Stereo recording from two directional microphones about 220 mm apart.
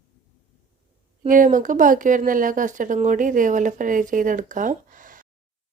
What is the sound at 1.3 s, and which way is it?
Speech, 35° right (ahead or behind).